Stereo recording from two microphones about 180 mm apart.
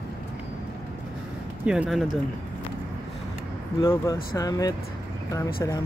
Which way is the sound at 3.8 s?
15° left (ahead or behind).